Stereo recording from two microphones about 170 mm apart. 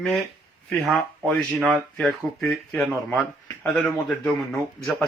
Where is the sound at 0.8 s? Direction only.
5° left (ahead or behind).